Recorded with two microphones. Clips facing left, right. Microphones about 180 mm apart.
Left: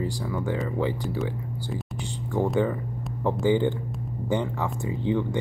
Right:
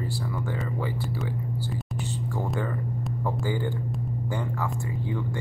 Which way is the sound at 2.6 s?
20° left (ahead or behind).